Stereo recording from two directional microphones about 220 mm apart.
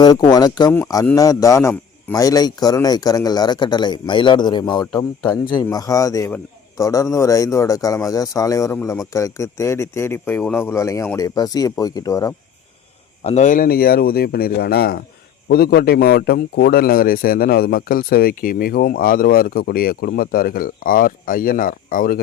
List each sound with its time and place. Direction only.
0.0 s speech: 20° left (ahead or behind)
13.2 s a man's voice: 30° left (ahead or behind)